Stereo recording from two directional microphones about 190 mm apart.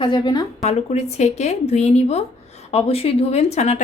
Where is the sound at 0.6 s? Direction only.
35° left (ahead or behind).